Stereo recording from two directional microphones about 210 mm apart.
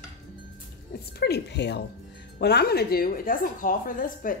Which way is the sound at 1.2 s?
50° left (ahead or behind).